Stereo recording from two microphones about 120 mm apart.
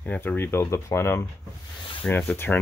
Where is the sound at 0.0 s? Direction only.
15° left (ahead or behind).